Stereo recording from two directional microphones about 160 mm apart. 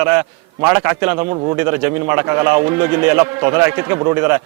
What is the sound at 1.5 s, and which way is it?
A man's voice, 15° right (ahead or behind).